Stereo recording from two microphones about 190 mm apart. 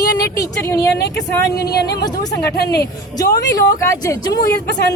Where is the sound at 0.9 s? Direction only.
60° left (ahead or behind).